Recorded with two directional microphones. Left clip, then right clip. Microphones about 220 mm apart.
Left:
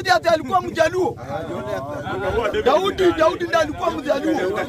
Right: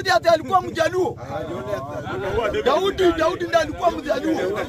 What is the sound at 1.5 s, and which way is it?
Speech, 15° left (ahead or behind).